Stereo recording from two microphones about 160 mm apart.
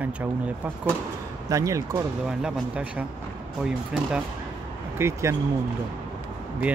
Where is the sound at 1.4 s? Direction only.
20° right (ahead or behind).